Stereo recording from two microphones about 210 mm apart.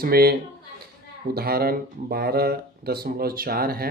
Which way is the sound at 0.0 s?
45° right (ahead or behind).